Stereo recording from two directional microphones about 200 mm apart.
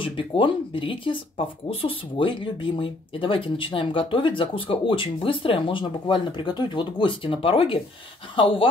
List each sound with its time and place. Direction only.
0.0 s speech: 25° left (ahead or behind)